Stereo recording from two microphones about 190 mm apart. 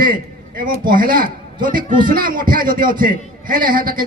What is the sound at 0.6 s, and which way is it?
A man's voice, 50° right (ahead or behind).